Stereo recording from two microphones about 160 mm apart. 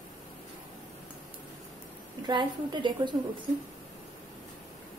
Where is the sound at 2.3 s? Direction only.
30° right (ahead or behind).